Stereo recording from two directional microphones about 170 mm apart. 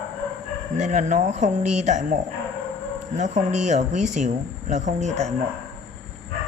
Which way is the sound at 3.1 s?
45° right (ahead or behind).